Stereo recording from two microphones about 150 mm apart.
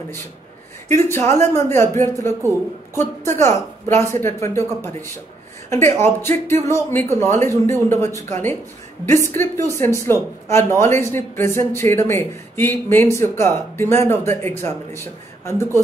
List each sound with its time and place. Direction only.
0.8 s a man's voice: 15° left (ahead or behind)